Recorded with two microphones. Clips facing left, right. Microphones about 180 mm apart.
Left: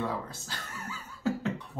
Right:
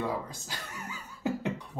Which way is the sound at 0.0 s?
15° right (ahead or behind).